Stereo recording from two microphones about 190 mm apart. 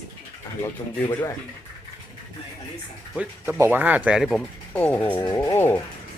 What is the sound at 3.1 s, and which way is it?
Speech, 10° right (ahead or behind).